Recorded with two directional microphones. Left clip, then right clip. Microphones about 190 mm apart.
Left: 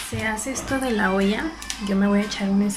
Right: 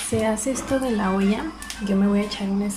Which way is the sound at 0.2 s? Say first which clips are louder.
Even; 15° right (ahead or behind).